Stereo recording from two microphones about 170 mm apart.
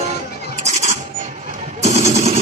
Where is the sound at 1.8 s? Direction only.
40° right (ahead or behind).